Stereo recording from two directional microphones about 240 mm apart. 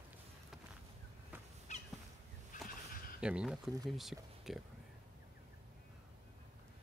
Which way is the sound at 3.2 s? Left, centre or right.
Centre.